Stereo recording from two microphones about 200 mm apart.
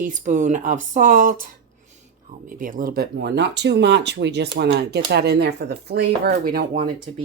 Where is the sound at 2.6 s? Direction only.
45° right (ahead or behind).